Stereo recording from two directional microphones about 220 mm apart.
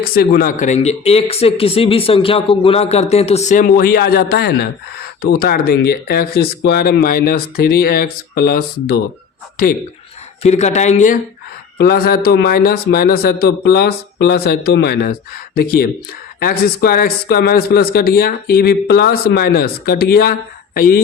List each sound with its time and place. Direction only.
0.0 s speech: 45° left (ahead or behind)
10.4 s speech: 30° left (ahead or behind)